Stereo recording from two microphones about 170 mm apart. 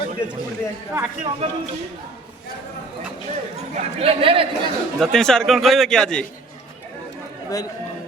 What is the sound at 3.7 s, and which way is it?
Speech, 35° right (ahead or behind).